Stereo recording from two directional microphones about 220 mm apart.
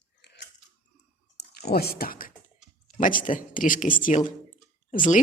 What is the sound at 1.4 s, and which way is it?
A woman's voice, 45° left (ahead or behind).